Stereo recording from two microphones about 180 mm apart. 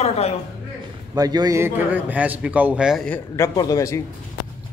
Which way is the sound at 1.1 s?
20° right (ahead or behind).